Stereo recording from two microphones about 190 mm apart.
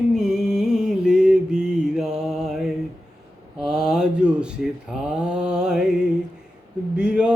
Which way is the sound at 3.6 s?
5° right (ahead or behind).